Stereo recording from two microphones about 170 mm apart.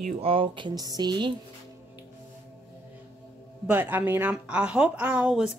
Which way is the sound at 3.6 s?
10° right (ahead or behind).